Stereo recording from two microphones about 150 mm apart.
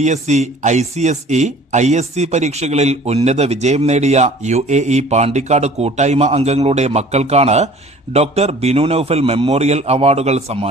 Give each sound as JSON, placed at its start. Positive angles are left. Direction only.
{"t": 0.0, "sound": "speech", "side_deg": -50}